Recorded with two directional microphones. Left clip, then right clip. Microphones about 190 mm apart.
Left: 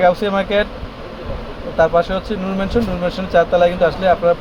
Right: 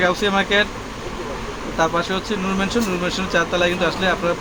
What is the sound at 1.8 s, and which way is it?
Speech, 60° left (ahead or behind).